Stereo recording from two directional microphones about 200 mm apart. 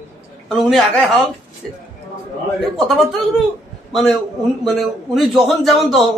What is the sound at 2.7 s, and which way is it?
Speech, centre (ahead or behind).